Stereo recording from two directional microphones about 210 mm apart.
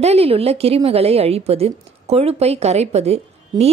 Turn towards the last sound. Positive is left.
turn(degrees=-30)  # may be behind; listen again after turning